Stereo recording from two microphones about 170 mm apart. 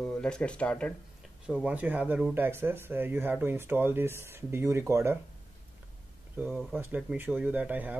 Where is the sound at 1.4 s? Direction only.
5° right (ahead or behind).